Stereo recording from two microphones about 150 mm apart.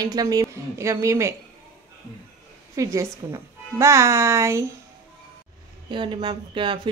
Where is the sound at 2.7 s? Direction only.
20° right (ahead or behind).